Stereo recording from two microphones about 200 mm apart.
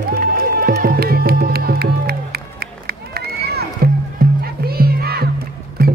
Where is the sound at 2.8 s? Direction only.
50° right (ahead or behind).